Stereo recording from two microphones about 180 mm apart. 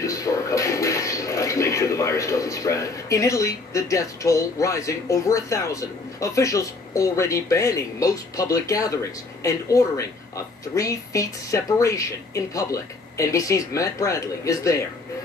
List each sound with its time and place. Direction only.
0.0 s a woman's voice: 20° left (ahead or behind)